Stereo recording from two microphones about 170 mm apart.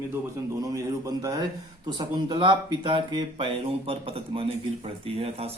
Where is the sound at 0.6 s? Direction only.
20° right (ahead or behind).